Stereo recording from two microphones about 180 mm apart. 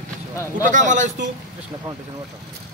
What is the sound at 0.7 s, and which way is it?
Speech, 45° right (ahead or behind).